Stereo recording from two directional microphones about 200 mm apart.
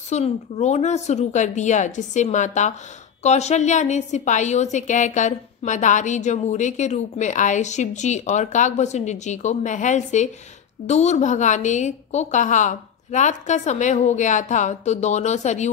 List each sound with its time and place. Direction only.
0.1 s a woman's voice: 35° left (ahead or behind)